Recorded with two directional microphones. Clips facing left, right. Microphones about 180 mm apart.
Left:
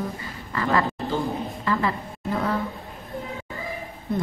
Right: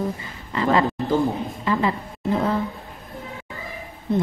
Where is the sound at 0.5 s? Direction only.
20° right (ahead or behind).